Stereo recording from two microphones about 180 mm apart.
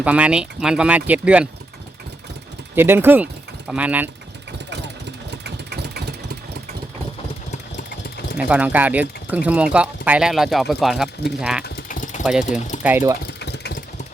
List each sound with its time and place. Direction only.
0.0 s speech: 5° right (ahead or behind)
2.7 s speech: 10° right (ahead or behind)
5.3 s vehicle: 70° right (ahead or behind)
8.4 s speech: 10° right (ahead or behind)
11.6 s a sound: 50° left (ahead or behind)
12.2 s speech: centre (ahead or behind)
12.5 s speech: 40° left (ahead or behind)
12.8 s speech: 10° right (ahead or behind)
13.4 s engine: 70° left (ahead or behind)